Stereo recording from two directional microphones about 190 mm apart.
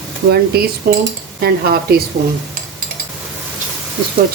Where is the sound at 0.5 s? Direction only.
55° right (ahead or behind).